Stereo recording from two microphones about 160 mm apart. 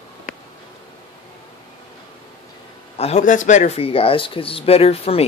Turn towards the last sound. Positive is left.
turn(degrees=40)  # may be behind; listen again after turning